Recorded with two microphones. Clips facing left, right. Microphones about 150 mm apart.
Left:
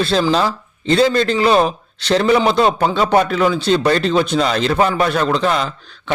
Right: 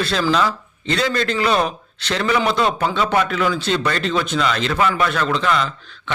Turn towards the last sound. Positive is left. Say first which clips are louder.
# left 1 dB
turn(degrees=35)  # may be behind; listen again after turning